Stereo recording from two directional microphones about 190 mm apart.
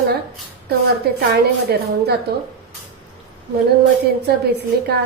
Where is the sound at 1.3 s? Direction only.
60° right (ahead or behind).